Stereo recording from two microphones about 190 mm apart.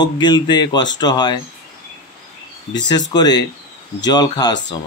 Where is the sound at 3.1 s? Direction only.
20° left (ahead or behind).